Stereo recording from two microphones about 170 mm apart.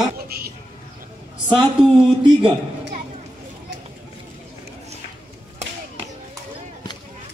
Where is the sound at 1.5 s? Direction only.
30° right (ahead or behind).